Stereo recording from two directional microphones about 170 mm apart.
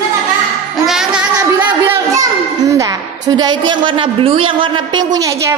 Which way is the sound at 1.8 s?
20° right (ahead or behind).